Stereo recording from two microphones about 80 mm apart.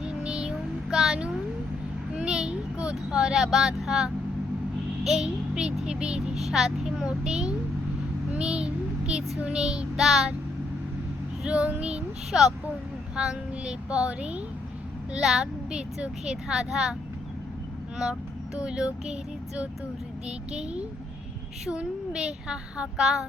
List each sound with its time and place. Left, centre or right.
0.0 s child singing: centre
2.1 s vehicle: centre
5.0 s speech: centre
8.3 s child singing: centre
9.4 s speech: centre
11.4 s speech: centre
17.9 s speech: centre